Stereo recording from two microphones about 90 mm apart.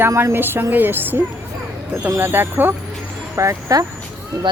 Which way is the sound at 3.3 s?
35° right (ahead or behind).